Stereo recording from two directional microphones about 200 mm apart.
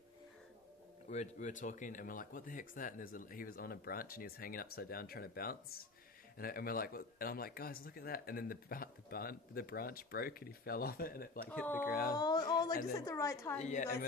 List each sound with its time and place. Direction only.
1.1 s speech: 35° left (ahead or behind)
11.5 s a woman's voice: 10° left (ahead or behind)
11.9 s speech: 50° left (ahead or behind)
12.2 s a woman's voice: 20° left (ahead or behind)
13.6 s a woman's voice: 35° left (ahead or behind)